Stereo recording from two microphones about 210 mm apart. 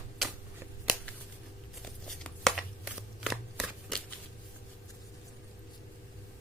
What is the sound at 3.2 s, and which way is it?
Shuffling cards, centre (ahead or behind).